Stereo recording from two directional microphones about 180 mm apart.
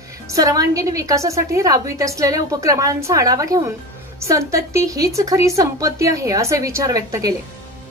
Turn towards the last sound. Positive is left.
turn(degrees=-20)  # may be behind; listen again after turning